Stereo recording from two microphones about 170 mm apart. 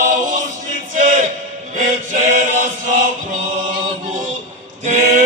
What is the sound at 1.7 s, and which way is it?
Music, 45° right (ahead or behind).